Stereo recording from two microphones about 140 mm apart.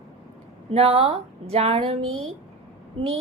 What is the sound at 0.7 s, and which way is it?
A woman's voice, 45° right (ahead or behind).